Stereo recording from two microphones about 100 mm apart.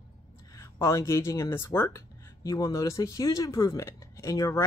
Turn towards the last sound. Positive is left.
turn(degrees=30)  # may be behind; listen again after turning